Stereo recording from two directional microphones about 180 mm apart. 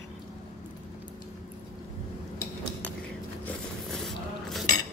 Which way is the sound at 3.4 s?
Centre (ahead or behind).